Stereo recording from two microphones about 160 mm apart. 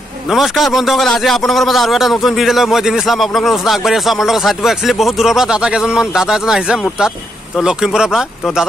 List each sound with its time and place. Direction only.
0.3 s a man's voice: centre (ahead or behind)